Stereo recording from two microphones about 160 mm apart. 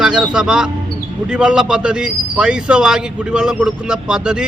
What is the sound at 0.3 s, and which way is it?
A man's voice, 5° right (ahead or behind).